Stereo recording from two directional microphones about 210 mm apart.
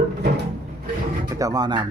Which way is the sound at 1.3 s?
15° right (ahead or behind).